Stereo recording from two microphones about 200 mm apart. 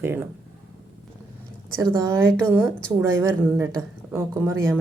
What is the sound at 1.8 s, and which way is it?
A woman's voice, 15° right (ahead or behind).